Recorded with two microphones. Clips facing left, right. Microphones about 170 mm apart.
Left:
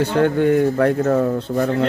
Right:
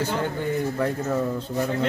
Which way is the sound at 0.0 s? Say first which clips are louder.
Left 10 dB; 65° left (ahead or behind).